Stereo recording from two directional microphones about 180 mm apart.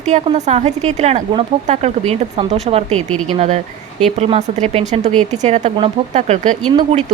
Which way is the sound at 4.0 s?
40° right (ahead or behind).